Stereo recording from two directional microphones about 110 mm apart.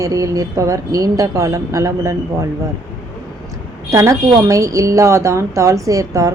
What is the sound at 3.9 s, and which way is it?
A woman's voice, 30° right (ahead or behind).